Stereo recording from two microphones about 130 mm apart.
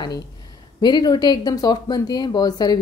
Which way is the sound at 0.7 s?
35° left (ahead or behind).